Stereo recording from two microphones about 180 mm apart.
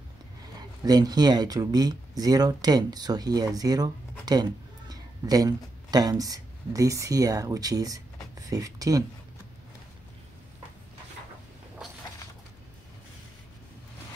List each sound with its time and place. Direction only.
0.6 s speech: 20° right (ahead or behind)